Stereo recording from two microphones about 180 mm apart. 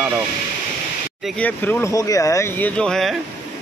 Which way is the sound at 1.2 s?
5° left (ahead or behind).